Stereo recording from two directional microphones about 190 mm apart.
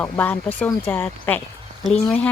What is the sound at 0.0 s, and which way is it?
Speech, 10° left (ahead or behind).